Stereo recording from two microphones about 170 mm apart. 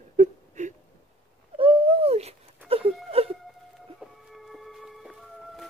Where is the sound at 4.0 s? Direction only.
Centre (ahead or behind).